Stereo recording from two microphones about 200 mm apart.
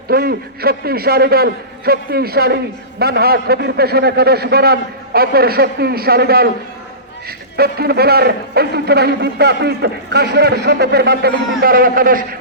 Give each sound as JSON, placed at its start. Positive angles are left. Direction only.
{"t": 0.1, "sound": "speech", "side_deg": -50}